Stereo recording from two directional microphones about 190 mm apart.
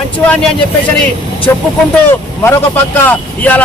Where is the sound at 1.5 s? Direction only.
10° left (ahead or behind).